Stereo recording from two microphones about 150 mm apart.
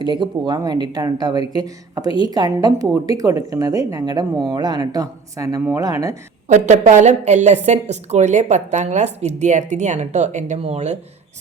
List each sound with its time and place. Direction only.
0.0 s a woman's voice: 30° right (ahead or behind)
6.5 s a woman's voice: 55° right (ahead or behind)